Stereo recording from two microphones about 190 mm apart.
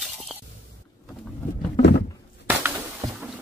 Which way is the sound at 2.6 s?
10° right (ahead or behind).